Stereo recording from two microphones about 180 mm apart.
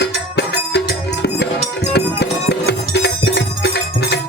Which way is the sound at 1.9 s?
65° left (ahead or behind).